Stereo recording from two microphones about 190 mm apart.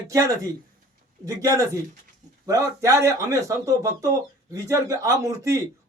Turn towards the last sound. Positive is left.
turn(degrees=-15)  # may be behind; listen again after turning